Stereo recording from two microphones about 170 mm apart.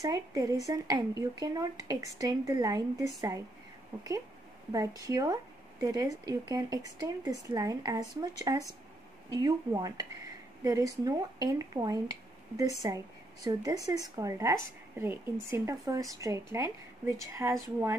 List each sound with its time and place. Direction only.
0.0 s speech: 20° right (ahead or behind)
4.7 s speech: 20° right (ahead or behind)